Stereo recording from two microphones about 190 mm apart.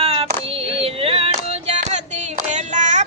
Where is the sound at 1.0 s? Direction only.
30° right (ahead or behind).